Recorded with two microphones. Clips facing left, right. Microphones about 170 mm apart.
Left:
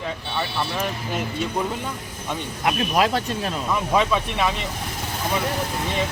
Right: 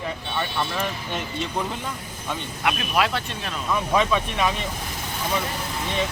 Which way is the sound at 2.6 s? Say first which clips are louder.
Left 3 dB; 35° left (ahead or behind).